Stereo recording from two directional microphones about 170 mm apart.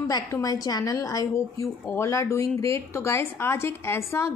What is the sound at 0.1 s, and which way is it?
A woman's voice, 20° left (ahead or behind).